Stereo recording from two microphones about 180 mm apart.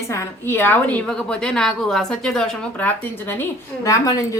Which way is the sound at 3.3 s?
15° left (ahead or behind).